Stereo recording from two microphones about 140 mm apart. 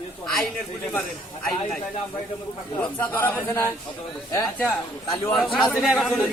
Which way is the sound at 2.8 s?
15° left (ahead or behind).